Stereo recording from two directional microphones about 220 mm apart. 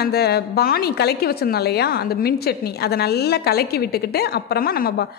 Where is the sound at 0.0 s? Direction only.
45° left (ahead or behind).